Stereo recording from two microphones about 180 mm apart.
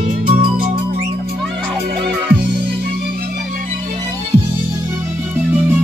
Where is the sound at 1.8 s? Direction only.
65° right (ahead or behind).